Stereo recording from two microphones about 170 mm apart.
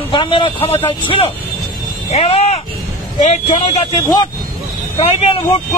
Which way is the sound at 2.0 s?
40° left (ahead or behind).